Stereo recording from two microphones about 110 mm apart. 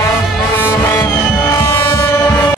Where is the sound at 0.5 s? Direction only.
20° left (ahead or behind).